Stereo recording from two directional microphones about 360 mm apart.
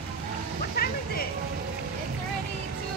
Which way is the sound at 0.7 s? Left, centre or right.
Left.